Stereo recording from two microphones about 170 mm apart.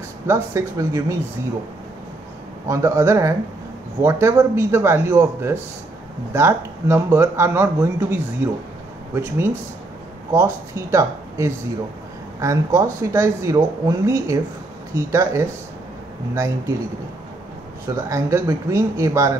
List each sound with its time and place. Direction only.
0.3 s speech: 15° right (ahead or behind)
2.7 s speech: 20° right (ahead or behind)
17.9 s speech: 15° right (ahead or behind)